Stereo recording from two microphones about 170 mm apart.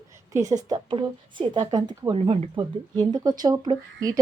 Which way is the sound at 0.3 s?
20° right (ahead or behind).